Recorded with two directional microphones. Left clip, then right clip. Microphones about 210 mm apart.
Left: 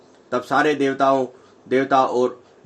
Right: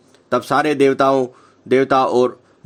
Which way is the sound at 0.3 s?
55° right (ahead or behind).